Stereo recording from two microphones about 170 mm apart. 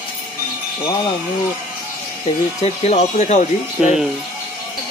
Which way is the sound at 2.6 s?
40° left (ahead or behind).